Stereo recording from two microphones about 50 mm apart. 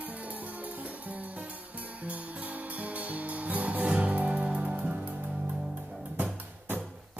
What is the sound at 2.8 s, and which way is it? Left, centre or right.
Music, right.